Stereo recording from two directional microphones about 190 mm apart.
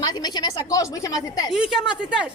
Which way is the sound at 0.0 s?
20° left (ahead or behind).